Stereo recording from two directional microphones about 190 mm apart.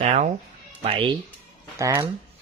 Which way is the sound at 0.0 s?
35° right (ahead or behind).